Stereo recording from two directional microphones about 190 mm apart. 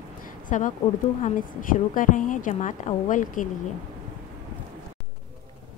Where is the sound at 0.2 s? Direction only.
45° left (ahead or behind).